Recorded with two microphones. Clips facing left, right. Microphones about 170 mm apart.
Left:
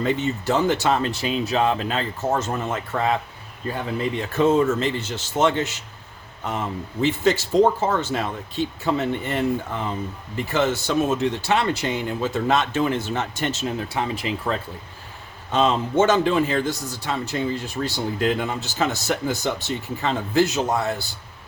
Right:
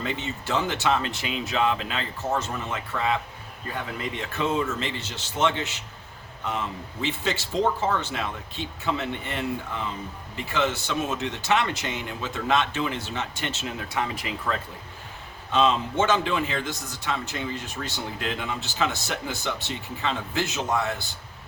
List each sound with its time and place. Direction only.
0.0 s a man's voice: 40° left (ahead or behind)
4.2 s a man's voice: 45° left (ahead or behind)
15.5 s a man's voice: 45° left (ahead or behind)